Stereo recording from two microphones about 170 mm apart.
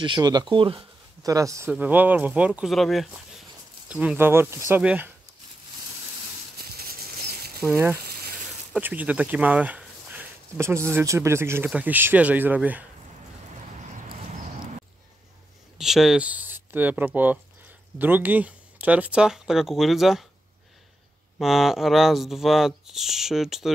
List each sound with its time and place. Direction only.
0.0 s speech: 25° right (ahead or behind); by 5.1 s 10° right (ahead or behind)
6.6 s a sound: 65° right (ahead or behind)
7.6 s speech: 15° right (ahead or behind)
8.0 s a sound: 65° right (ahead or behind)
8.7 s speech: 10° right (ahead or behind)
15.8 s speech: centre (ahead or behind)
21.4 s speech: centre (ahead or behind)